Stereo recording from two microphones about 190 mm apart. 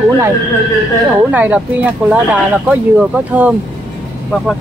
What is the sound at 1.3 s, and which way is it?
Speech, 10° right (ahead or behind).